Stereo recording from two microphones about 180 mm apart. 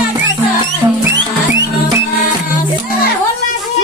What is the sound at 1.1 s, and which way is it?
Music, 85° right.